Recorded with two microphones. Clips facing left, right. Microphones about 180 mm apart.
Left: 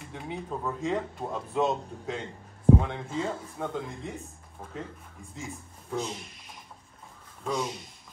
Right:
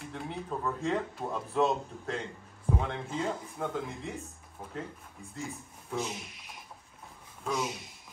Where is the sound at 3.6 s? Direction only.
Centre (ahead or behind).